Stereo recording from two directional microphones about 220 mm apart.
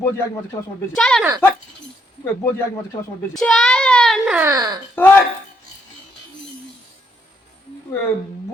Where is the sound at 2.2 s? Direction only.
10° left (ahead or behind); by 4.8 s 15° right (ahead or behind).